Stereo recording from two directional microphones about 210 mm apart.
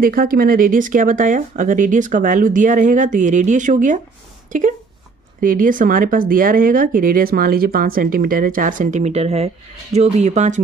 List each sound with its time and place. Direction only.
0.0 s speech: 45° right (ahead or behind)